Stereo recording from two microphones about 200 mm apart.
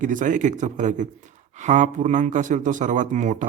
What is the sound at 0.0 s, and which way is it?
Speech, 40° right (ahead or behind).